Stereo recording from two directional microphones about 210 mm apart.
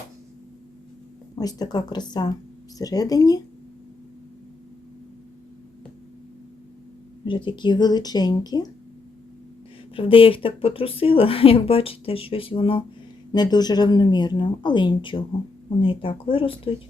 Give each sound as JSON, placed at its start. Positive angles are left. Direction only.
{"t": 1.4, "sound": "speech", "side_deg": 20}
{"t": 7.3, "sound": "speech", "side_deg": 25}
{"t": 9.9, "sound": "speech", "side_deg": 25}